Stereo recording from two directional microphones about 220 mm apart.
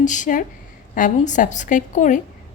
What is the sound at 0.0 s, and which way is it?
A woman's voice, 35° left (ahead or behind).